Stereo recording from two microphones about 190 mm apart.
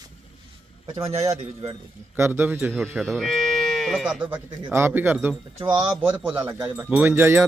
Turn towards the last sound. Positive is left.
turn(degrees=-15)  # may be behind; listen again after turning